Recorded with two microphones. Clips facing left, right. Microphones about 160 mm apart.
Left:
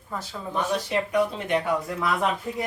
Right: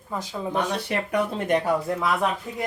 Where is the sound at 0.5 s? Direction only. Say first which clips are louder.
Left 1 dB; 65° right (ahead or behind).